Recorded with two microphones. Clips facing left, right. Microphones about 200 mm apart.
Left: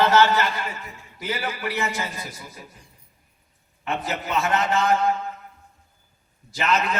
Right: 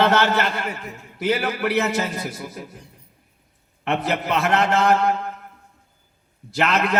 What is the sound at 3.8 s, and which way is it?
A man's voice, 65° right (ahead or behind).